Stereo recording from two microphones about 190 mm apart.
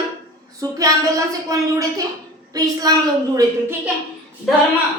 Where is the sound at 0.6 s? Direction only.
20° right (ahead or behind).